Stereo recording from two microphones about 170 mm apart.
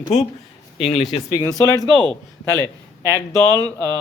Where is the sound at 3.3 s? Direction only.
20° right (ahead or behind).